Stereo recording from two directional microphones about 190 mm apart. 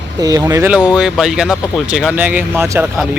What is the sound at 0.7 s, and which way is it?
Speech, 5° right (ahead or behind).